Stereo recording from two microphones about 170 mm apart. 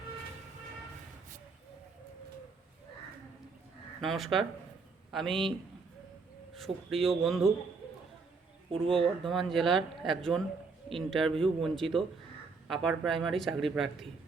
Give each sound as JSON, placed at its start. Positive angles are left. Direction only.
{"t": 4.0, "sound": "speech", "side_deg": 0}
{"t": 8.7, "sound": "speech", "side_deg": -30}
{"t": 9.2, "sound": "speech", "side_deg": 0}